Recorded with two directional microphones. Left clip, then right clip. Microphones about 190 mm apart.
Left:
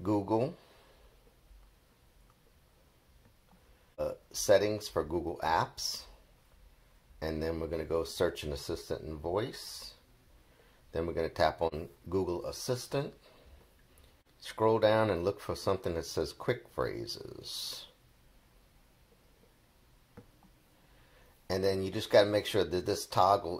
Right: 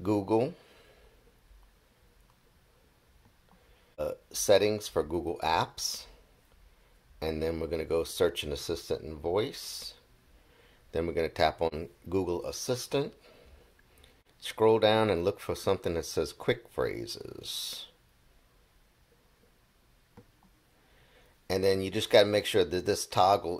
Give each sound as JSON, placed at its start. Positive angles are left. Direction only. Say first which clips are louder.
{"t": 0.0, "sound": "speech", "louder": "right 3 dB", "side_deg": -20}
{"t": 3.9, "sound": "speech", "louder": "right 2 dB", "side_deg": -20}
{"t": 7.2, "sound": "speech", "louder": "right 3 dB", "side_deg": -20}
{"t": 10.9, "sound": "speech", "louder": "right 3 dB", "side_deg": -20}
{"t": 14.4, "sound": "speech", "louder": "right 3 dB", "side_deg": -20}
{"t": 21.5, "sound": "speech", "louder": "right 4 dB", "side_deg": -20}